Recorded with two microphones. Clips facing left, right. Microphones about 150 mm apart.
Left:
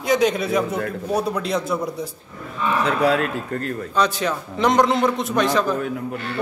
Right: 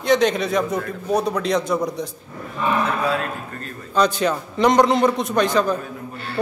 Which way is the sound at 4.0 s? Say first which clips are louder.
Right 3 dB; centre (ahead or behind).